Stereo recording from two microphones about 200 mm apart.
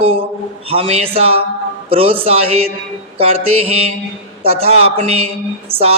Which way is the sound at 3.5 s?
30° right (ahead or behind).